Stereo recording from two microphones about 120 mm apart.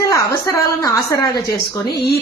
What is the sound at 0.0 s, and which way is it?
A woman's voice, 25° left (ahead or behind).